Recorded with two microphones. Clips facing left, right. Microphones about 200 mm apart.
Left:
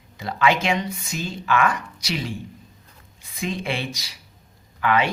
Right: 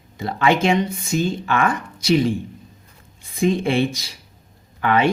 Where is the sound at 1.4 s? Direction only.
30° right (ahead or behind).